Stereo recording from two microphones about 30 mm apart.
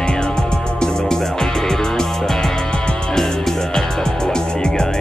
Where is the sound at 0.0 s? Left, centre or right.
Left.